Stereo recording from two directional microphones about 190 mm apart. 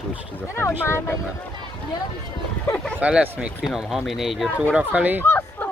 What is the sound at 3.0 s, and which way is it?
Speech, 5° right (ahead or behind).